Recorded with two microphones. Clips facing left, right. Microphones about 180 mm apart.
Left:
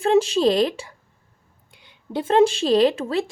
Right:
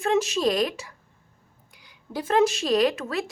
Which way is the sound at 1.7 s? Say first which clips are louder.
Left 5 dB; 25° left (ahead or behind).